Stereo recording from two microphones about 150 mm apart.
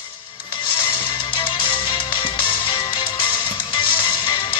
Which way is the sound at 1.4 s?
35° left (ahead or behind).